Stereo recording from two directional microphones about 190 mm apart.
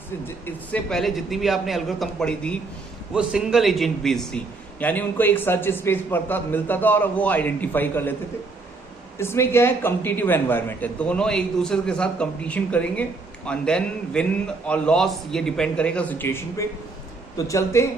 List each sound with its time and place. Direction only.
0.3 s a man's voice: 10° left (ahead or behind)
9.1 s a man's voice: 15° left (ahead or behind)